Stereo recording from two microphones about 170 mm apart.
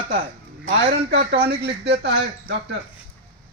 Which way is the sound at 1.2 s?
75° right (ahead or behind).